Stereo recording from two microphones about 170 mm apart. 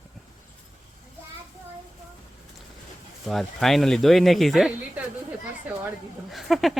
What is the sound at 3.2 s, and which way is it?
Speech, centre (ahead or behind).